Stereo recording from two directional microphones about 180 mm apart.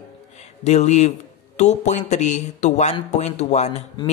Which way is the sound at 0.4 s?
35° left (ahead or behind).